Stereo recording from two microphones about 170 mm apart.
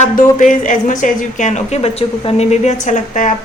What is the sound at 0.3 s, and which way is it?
A woman's voice, 50° left (ahead or behind).